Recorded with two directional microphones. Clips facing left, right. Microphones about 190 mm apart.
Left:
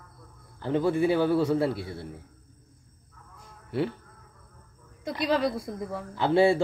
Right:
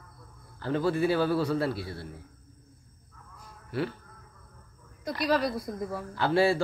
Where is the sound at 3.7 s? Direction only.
20° left (ahead or behind).